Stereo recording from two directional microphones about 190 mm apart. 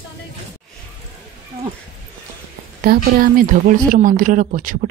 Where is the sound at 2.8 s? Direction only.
50° right (ahead or behind).